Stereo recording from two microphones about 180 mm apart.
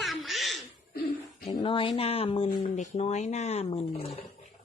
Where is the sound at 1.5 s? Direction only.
25° left (ahead or behind).